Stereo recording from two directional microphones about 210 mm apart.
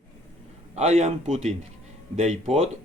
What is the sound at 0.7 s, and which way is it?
A man's voice, 30° right (ahead or behind).